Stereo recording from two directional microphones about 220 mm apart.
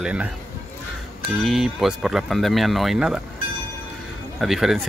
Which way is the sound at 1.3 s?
Centre (ahead or behind).